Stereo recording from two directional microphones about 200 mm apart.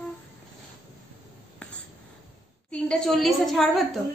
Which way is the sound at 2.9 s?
5° left (ahead or behind).